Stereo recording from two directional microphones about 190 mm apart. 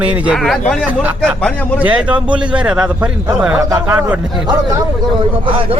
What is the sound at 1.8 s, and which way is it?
A man's voice, 5° right (ahead or behind).